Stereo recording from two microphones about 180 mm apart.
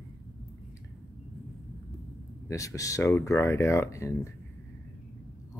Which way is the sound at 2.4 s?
15° left (ahead or behind).